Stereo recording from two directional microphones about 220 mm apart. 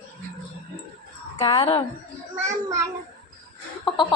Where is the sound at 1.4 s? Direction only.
20° left (ahead or behind).